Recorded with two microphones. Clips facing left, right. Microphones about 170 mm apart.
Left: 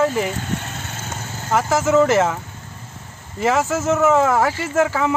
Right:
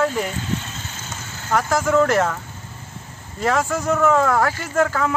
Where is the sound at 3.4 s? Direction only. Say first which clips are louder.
Left 2 dB; 5° left (ahead or behind).